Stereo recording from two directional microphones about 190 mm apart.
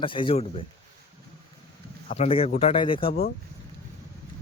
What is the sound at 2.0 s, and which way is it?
Speech, 35° left (ahead or behind).